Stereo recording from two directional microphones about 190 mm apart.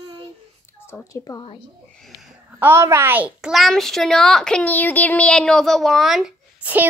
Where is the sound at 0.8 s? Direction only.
15° left (ahead or behind).